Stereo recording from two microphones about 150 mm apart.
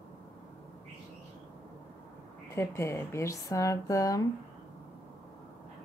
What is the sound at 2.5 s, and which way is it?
A woman's voice, 20° left (ahead or behind).